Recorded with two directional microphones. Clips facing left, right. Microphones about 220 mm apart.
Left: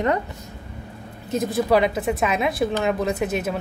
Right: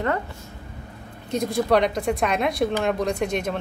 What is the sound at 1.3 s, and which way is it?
A woman's voice, 5° left (ahead or behind).